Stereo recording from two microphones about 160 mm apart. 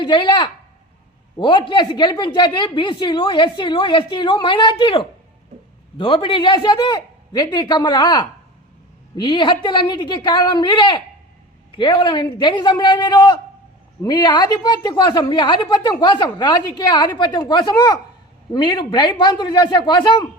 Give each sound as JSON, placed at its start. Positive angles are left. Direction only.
{"t": 0.0, "sound": "a woman's voice", "side_deg": 30}